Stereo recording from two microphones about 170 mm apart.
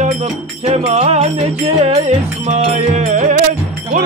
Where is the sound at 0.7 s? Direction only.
40° right (ahead or behind).